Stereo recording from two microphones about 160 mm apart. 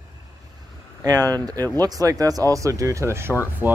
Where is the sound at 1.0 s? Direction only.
20° right (ahead or behind).